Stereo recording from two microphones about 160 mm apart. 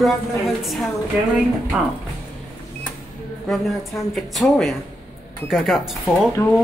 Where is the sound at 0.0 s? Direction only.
Centre (ahead or behind).